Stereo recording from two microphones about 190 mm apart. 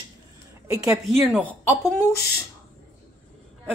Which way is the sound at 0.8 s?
Centre (ahead or behind).